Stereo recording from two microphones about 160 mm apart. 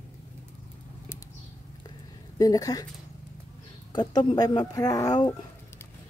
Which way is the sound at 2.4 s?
25° left (ahead or behind).